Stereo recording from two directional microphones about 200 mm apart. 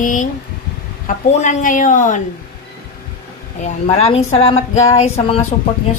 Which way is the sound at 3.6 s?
30° left (ahead or behind).